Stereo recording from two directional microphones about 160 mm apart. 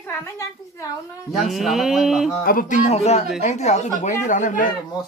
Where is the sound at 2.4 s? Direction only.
55° left (ahead or behind).